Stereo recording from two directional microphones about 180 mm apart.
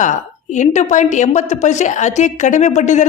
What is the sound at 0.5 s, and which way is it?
A woman's voice, 40° left (ahead or behind).